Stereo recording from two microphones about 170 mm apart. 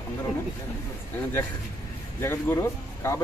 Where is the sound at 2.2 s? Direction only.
15° left (ahead or behind).